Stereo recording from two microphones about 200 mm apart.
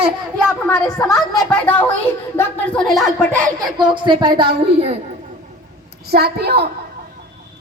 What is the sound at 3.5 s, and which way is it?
A woman's voice, 20° right (ahead or behind).